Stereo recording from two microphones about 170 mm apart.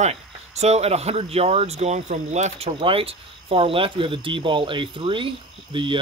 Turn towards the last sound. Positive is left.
turn(degrees=-30)  # may be behind; listen again after turning